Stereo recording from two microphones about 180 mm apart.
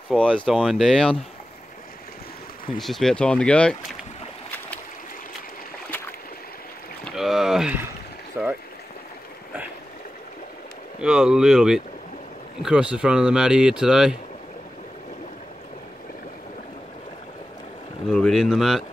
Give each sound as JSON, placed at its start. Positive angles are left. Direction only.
{"t": 0.3, "sound": "speech", "side_deg": -5}
{"t": 2.8, "sound": "speech", "side_deg": 0}
{"t": 7.1, "sound": "speech", "side_deg": 0}
{"t": 11.0, "sound": "speech", "side_deg": -5}
{"t": 18.0, "sound": "speech", "side_deg": 0}